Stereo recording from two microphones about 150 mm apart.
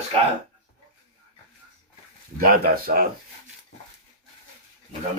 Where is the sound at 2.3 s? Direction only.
75° right (ahead or behind).